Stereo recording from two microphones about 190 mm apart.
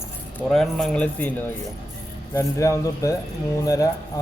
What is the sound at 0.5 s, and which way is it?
Speech, centre (ahead or behind).